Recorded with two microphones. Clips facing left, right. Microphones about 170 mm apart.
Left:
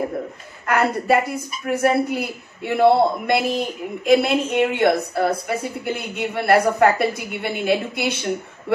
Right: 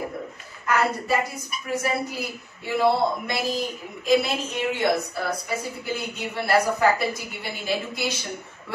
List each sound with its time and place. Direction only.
0.7 s a woman's voice: 60° left (ahead or behind)